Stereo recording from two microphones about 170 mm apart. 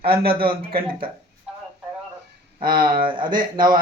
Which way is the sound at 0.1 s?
35° right (ahead or behind).